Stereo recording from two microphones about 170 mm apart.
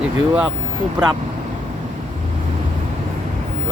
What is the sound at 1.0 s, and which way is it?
Speech, 5° right (ahead or behind).